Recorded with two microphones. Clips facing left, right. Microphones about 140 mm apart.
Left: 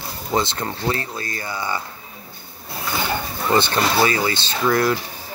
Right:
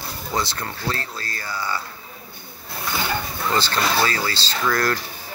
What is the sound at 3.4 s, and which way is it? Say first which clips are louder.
Speech: left 4 dB; 20° left (ahead or behind).